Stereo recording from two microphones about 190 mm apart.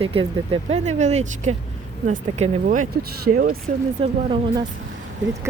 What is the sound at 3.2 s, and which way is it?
Speech, 50° right (ahead or behind).